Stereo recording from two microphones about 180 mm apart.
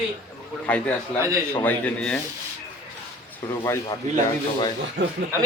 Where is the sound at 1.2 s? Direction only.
15° right (ahead or behind).